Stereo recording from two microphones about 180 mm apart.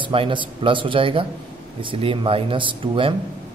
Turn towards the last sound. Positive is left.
turn(degrees=-30)  # may be behind; listen again after turning